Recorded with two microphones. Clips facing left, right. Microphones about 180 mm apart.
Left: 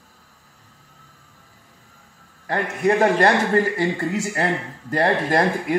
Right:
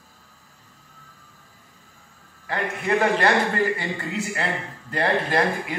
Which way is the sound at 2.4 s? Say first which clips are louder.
Left 6 dB; 40° left (ahead or behind).